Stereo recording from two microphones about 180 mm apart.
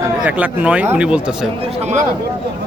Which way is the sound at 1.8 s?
40° right (ahead or behind).